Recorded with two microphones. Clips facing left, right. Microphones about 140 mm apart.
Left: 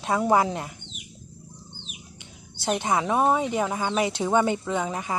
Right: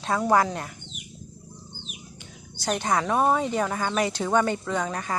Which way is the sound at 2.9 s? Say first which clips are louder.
Even; 10° left (ahead or behind).